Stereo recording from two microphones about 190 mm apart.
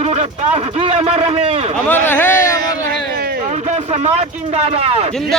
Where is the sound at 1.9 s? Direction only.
10° left (ahead or behind).